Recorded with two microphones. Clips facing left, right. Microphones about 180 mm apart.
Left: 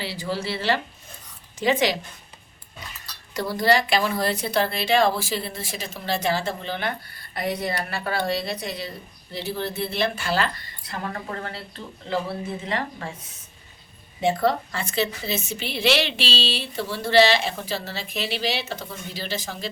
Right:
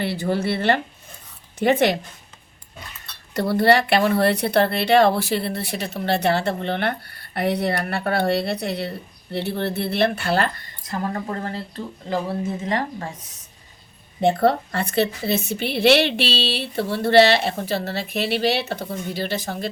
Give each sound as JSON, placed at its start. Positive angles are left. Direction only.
{"t": 0.0, "sound": "a woman's voice", "side_deg": -55}
{"t": 3.3, "sound": "a woman's voice", "side_deg": -60}
{"t": 10.9, "sound": "a woman's voice", "side_deg": -35}
{"t": 14.2, "sound": "a woman's voice", "side_deg": -60}